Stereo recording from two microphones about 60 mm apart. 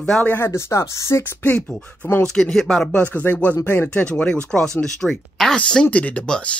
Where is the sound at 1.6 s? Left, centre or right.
Left.